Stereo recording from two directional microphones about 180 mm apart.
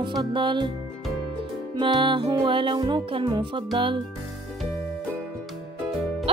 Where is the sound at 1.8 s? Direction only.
30° right (ahead or behind).